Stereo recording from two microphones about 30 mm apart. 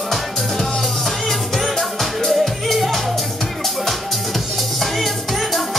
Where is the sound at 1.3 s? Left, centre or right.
Centre.